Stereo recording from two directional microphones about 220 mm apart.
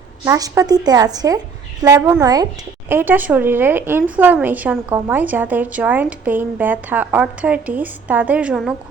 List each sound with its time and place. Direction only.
0.3 s a woman's voice: 15° right (ahead or behind)